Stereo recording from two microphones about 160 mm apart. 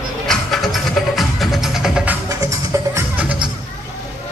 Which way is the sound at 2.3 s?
20° right (ahead or behind).